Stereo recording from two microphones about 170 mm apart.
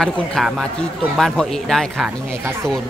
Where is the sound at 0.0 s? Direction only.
Centre (ahead or behind).